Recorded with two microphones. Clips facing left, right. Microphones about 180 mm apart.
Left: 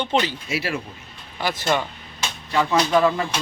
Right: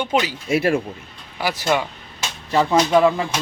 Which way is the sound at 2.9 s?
15° right (ahead or behind).